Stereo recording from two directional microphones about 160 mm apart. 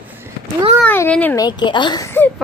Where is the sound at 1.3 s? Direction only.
25° left (ahead or behind).